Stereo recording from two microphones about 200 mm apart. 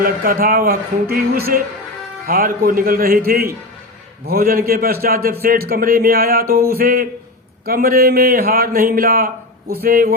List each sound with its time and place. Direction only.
0.0 s speech: 45° right (ahead or behind)